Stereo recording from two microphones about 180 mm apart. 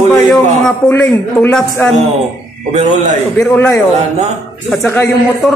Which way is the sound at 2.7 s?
40° right (ahead or behind).